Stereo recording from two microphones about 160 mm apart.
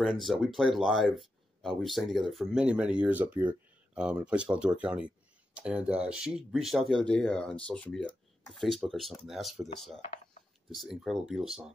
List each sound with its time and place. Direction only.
0.0 s speech: centre (ahead or behind)